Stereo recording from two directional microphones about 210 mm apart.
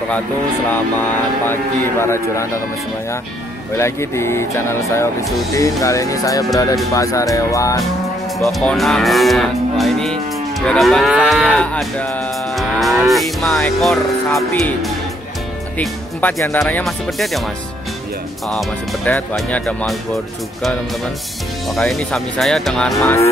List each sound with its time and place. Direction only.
1.5 s speech: 10° left (ahead or behind)
3.7 s speech: 15° left (ahead or behind)
8.4 s moo: centre (ahead or behind)
15.8 s speech: 10° left (ahead or behind)
18.5 s moo: 5° left (ahead or behind)
21.6 s moo: centre (ahead or behind)
22.9 s speech: 15° left (ahead or behind)